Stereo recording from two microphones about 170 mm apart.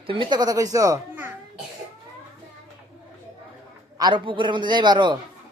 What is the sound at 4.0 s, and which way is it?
A man's voice, 25° right (ahead or behind).